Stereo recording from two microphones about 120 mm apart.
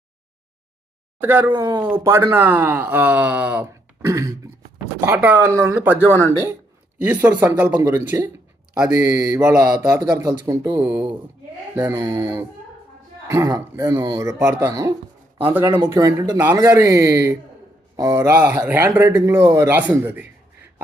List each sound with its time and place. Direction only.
1.2 s speech: 15° right (ahead or behind)
1.5 s speech: 35° right (ahead or behind)
1.8 s speech: 20° right (ahead or behind)
4.0 s throat clearing: 25° right (ahead or behind)
4.9 s a man's voice: 15° right (ahead or behind)
10.8 s a man's voice: 15° right (ahead or behind)